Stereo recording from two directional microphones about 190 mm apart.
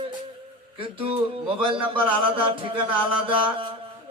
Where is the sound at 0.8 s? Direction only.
30° right (ahead or behind).